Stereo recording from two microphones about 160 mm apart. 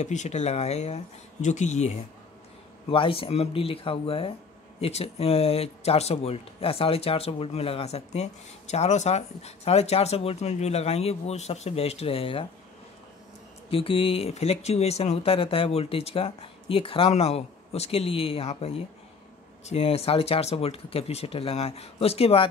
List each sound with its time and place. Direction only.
0.0 s speech: 50° left (ahead or behind)
2.9 s speech: 35° left (ahead or behind)
13.7 s speech: 35° left (ahead or behind)